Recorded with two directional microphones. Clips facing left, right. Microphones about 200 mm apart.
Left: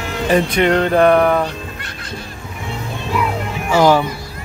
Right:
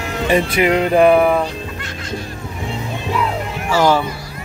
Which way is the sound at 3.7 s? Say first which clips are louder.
Left 2 dB; 15° left (ahead or behind).